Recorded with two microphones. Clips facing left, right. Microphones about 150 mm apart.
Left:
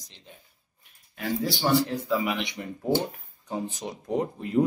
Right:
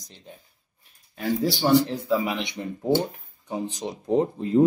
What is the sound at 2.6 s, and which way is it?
Speech, 20° right (ahead or behind).